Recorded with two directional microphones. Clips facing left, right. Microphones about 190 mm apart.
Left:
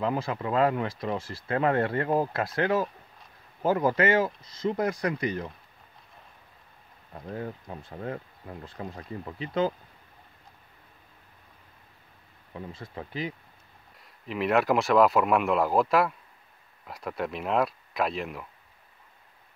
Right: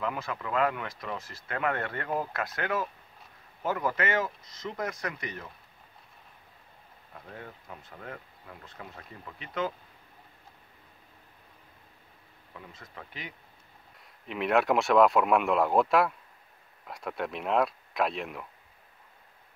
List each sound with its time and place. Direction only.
0.0 s speech: 30° left (ahead or behind)
7.2 s speech: 35° left (ahead or behind)
12.5 s speech: 30° left (ahead or behind)
14.2 s speech: centre (ahead or behind)